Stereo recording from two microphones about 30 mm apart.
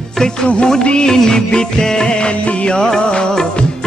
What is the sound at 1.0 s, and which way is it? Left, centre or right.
Music, centre.